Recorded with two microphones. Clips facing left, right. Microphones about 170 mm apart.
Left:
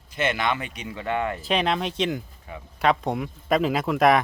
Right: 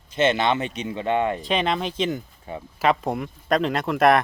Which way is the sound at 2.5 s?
30° right (ahead or behind).